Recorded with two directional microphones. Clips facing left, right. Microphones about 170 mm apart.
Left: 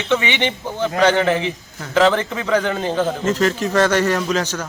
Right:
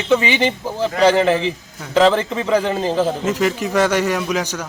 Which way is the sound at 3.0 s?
10° right (ahead or behind).